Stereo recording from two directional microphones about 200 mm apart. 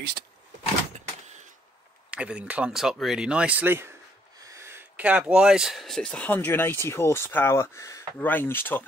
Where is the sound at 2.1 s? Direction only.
5° right (ahead or behind).